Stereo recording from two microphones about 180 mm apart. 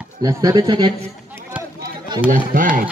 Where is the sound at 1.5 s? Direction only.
5° right (ahead or behind).